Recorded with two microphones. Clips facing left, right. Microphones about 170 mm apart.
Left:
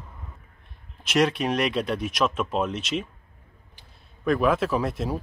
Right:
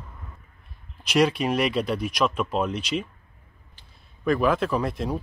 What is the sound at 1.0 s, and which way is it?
Speech, centre (ahead or behind).